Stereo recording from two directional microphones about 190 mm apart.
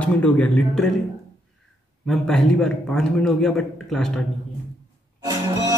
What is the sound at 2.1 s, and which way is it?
A man's voice, centre (ahead or behind).